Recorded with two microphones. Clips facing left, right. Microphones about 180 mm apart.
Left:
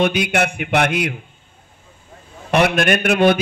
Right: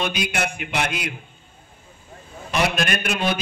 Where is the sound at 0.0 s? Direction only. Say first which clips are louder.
Left 7 dB; 60° left (ahead or behind).